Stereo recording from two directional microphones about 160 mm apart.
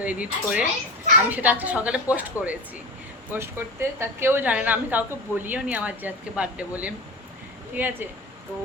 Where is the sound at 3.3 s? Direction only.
15° right (ahead or behind).